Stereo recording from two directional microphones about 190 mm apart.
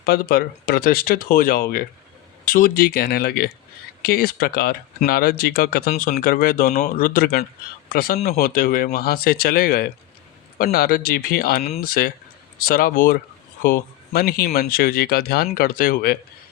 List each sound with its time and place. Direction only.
0.0 s speech: 55° left (ahead or behind)